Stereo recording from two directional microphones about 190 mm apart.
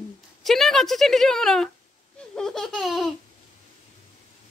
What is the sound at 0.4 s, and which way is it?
Speech, centre (ahead or behind).